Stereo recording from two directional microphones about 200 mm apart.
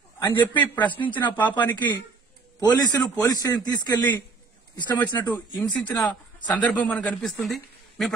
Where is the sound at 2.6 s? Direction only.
20° left (ahead or behind).